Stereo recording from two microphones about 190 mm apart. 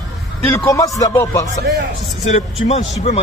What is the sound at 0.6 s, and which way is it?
Music, 15° left (ahead or behind).